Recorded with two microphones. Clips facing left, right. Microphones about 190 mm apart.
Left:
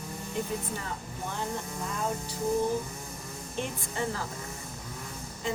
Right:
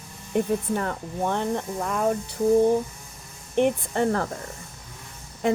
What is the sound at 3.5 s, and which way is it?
Speech, 60° right (ahead or behind).